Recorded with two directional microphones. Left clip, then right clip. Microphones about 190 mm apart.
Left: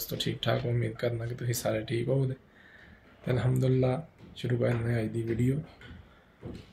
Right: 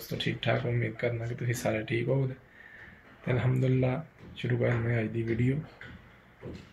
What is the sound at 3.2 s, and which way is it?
Speech, 15° left (ahead or behind).